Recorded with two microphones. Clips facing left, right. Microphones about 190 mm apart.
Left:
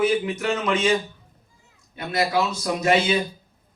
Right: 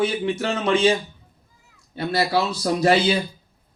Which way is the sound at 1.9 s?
30° right (ahead or behind).